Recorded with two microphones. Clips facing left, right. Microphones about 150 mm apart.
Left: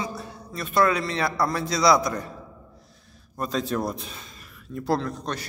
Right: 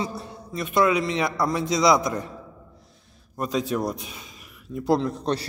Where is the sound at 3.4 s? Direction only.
10° right (ahead or behind).